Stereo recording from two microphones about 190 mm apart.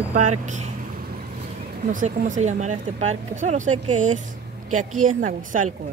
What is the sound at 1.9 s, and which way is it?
A woman's voice, 45° right (ahead or behind).